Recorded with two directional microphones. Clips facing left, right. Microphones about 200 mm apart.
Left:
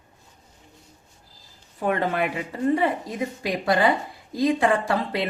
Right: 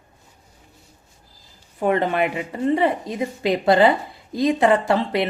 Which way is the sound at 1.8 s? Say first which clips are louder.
Right 4 dB; 25° right (ahead or behind).